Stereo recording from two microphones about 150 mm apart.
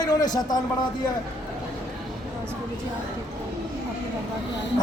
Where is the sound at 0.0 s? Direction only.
25° left (ahead or behind).